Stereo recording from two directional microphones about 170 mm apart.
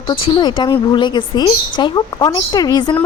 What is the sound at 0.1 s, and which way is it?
A woman's voice, 25° left (ahead or behind).